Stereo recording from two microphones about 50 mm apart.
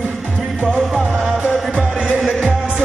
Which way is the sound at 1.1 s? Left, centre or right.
Centre.